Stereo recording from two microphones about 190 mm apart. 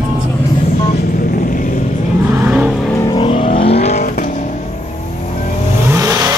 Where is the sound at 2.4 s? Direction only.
5° right (ahead or behind).